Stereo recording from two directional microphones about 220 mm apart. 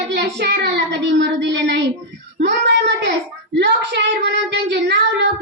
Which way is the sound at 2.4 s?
50° right (ahead or behind).